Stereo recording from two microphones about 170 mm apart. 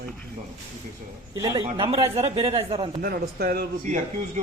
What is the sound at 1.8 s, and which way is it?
Speech, 35° right (ahead or behind).